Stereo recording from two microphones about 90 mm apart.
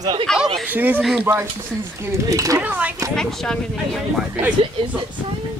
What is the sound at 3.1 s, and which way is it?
Speech, 5° left (ahead or behind).